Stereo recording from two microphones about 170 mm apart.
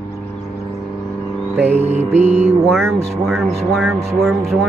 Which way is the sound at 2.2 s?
40° right (ahead or behind).